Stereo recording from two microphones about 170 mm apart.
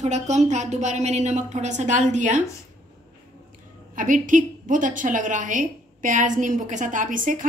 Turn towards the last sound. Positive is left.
turn(degrees=-50)  # may be behind; listen again after turning